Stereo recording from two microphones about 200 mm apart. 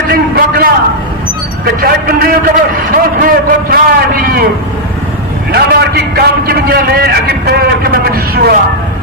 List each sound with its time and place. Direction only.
0.1 s a sound: 50° right (ahead or behind)
1.6 s a man's voice: 50° right (ahead or behind)
5.5 s a man's voice: 50° right (ahead or behind)